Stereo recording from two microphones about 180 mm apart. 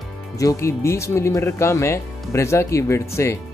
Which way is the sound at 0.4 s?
15° left (ahead or behind).